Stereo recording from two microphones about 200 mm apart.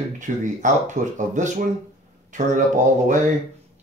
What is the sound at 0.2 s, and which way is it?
Speech, 40° right (ahead or behind).